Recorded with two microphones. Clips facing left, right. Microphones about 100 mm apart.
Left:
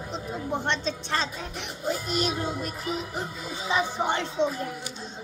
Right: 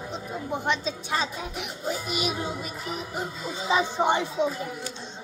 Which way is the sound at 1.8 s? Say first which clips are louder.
Left 2 dB; 5° right (ahead or behind).